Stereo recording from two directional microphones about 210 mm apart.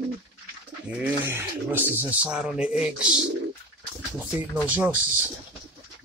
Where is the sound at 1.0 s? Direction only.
10° right (ahead or behind).